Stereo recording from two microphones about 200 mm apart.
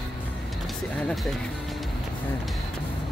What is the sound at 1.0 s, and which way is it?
Speech, centre (ahead or behind).